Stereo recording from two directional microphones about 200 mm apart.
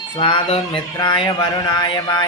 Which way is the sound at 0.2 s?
25° left (ahead or behind).